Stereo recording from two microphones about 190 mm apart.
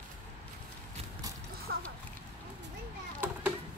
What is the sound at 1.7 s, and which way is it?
Clip-clop, 60° right (ahead or behind).